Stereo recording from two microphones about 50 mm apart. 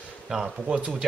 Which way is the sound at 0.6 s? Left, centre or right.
Right.